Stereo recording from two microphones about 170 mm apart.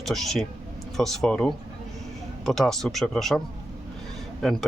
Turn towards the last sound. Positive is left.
turn(degrees=0)  # may be behind; listen again after turning